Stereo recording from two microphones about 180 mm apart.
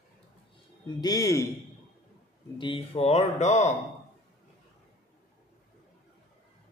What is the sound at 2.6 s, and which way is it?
Speech, 30° left (ahead or behind).